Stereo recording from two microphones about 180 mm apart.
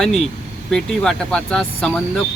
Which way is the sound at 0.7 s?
5° left (ahead or behind).